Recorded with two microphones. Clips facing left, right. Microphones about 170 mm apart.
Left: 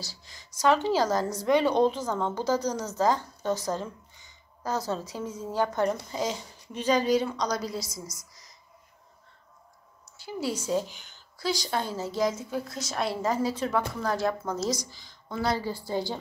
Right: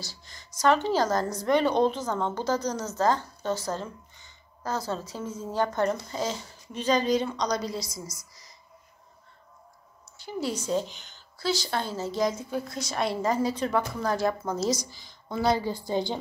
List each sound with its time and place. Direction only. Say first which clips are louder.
0.0 s speech: even; 5° left (ahead or behind)
10.1 s a woman's voice: even; 5° left (ahead or behind)
14.8 s a woman's voice: right 1 dB; 10° right (ahead or behind)